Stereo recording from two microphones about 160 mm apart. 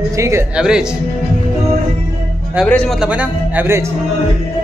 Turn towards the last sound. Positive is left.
turn(degrees=-15)  # may be behind; listen again after turning